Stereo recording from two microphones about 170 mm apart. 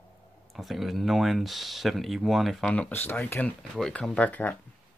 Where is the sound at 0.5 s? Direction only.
Centre (ahead or behind).